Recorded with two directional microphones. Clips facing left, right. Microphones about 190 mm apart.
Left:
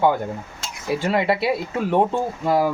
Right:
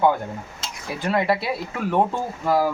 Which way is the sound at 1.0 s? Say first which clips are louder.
Even; 25° left (ahead or behind).